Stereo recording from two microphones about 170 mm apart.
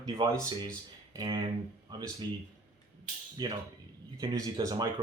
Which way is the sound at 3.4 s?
25° right (ahead or behind).